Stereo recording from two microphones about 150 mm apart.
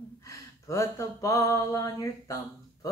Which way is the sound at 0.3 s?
20° left (ahead or behind).